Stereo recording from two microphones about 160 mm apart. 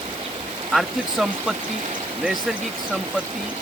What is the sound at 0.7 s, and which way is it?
Speech, centre (ahead or behind).